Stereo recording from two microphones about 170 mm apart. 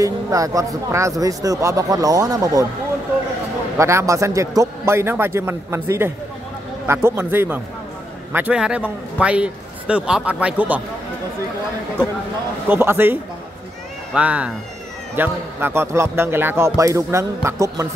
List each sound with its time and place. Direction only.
0.0 s speech: 20° right (ahead or behind)
3.7 s speech: 15° right (ahead or behind)
12.6 s speech: 10° right (ahead or behind)